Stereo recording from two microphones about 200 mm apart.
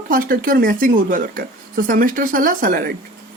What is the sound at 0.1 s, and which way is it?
Speech, 45° right (ahead or behind).